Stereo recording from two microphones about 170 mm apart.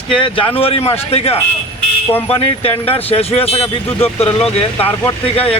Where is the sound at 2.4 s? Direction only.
35° left (ahead or behind).